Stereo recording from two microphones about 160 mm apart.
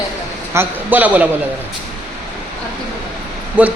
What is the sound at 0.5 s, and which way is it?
Speech, 10° right (ahead or behind).